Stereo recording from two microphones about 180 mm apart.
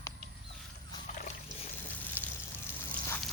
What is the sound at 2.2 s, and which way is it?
Pour, 10° left (ahead or behind).